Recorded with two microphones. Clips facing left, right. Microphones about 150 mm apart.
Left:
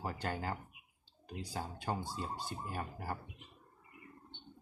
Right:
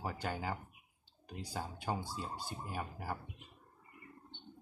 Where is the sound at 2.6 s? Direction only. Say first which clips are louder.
Right 1 dB; 5° right (ahead or behind).